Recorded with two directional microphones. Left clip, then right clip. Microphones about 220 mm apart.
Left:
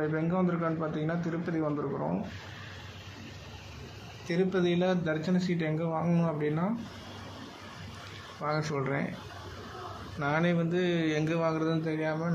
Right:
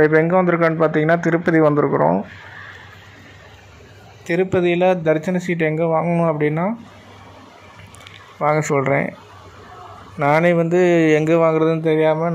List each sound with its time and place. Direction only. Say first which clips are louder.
0.3 s speech: right 15 dB; 20° right (ahead or behind)
4.3 s speech: right 11 dB; 20° right (ahead or behind)
8.4 s speech: right 15 dB; 25° right (ahead or behind)
10.2 s speech: right 15 dB; 30° right (ahead or behind)